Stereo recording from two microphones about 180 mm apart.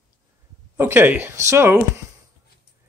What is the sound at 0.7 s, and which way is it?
Speech, 10° right (ahead or behind).